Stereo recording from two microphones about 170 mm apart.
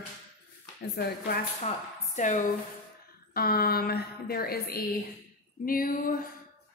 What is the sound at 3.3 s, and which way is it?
A woman's voice, 60° left (ahead or behind).